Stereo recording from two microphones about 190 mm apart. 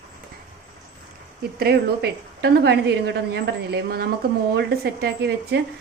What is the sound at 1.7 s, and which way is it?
A woman's voice, 60° right (ahead or behind).